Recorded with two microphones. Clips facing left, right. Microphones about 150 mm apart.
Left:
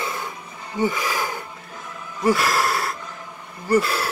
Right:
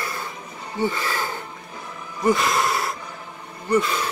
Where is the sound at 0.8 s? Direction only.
10° left (ahead or behind).